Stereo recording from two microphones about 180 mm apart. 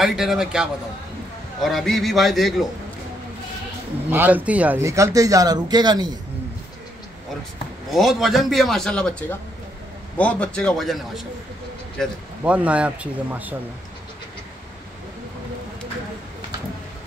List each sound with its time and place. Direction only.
0.0 s a man's voice: centre (ahead or behind)
4.1 s a man's voice: 10° right (ahead or behind)
7.9 s a man's voice: centre (ahead or behind)